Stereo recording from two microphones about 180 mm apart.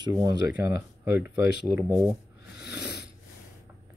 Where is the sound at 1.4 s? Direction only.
65° left (ahead or behind).